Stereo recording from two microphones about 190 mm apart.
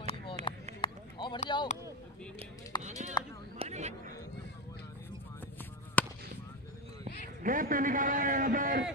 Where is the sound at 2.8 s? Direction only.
40° right (ahead or behind).